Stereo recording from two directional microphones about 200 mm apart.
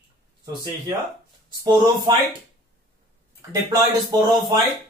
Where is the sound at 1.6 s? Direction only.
20° right (ahead or behind).